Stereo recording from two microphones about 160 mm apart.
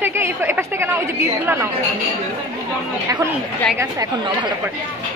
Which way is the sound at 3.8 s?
20° right (ahead or behind).